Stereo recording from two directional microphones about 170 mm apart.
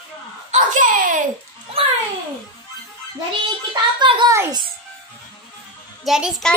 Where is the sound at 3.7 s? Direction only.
25° right (ahead or behind).